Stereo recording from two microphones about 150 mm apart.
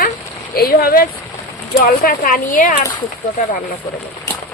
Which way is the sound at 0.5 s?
90° left.